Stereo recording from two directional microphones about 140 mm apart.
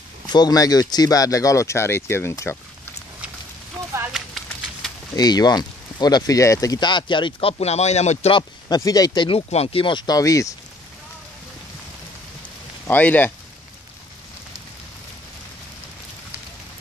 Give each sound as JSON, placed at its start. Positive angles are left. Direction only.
{"t": 0.3, "sound": "speech", "side_deg": 30}
{"t": 5.1, "sound": "speech", "side_deg": 30}
{"t": 8.4, "sound": "speech", "side_deg": 30}
{"t": 9.5, "sound": "speech", "side_deg": 45}
{"t": 12.8, "sound": "speech", "side_deg": 10}